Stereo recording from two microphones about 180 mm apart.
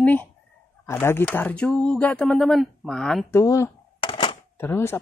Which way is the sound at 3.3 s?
15° left (ahead or behind).